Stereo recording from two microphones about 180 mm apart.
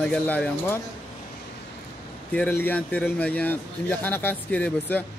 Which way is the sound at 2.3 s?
10° left (ahead or behind).